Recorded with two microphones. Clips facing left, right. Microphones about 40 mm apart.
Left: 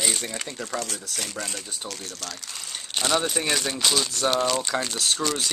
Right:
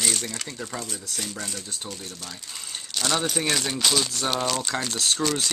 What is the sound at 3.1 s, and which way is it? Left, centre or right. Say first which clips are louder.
Speech: left 1 dB; centre.